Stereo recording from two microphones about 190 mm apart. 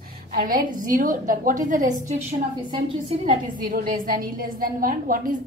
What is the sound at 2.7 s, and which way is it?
Speech, 30° right (ahead or behind).